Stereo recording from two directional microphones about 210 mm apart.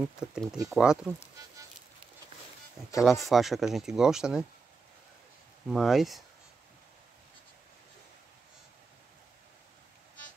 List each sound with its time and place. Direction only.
0.0 s speech: 5° right (ahead or behind)
3.0 s speech: centre (ahead or behind)
5.7 s speech: centre (ahead or behind)